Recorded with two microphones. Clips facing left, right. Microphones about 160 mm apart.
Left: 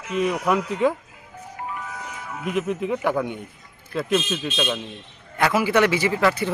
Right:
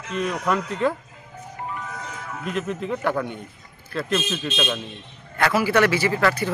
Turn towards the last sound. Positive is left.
turn(degrees=15)  # may be behind; listen again after turning